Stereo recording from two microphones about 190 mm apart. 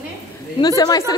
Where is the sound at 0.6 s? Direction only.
20° left (ahead or behind).